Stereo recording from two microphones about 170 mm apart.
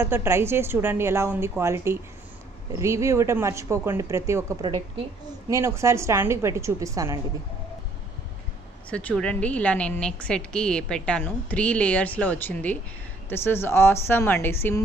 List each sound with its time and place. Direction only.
0.0 s a woman's voice: 15° right (ahead or behind)
4.6 s a woman's voice: 30° right (ahead or behind)
5.5 s a woman's voice: 15° right (ahead or behind)
8.9 s a woman's voice: 5° left (ahead or behind)